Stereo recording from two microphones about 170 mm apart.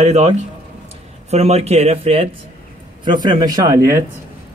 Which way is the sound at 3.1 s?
25° right (ahead or behind).